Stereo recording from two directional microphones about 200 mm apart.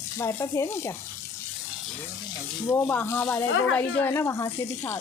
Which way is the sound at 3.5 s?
75° left (ahead or behind).